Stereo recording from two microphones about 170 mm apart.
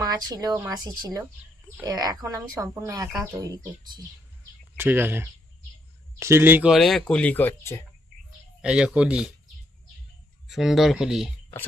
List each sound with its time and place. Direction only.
0.0 s speech: 20° right (ahead or behind)
4.8 s speech: 10° right (ahead or behind); by 7.9 s 15° left (ahead or behind)
8.6 s speech: 5° right (ahead or behind)
10.5 s speech: centre (ahead or behind)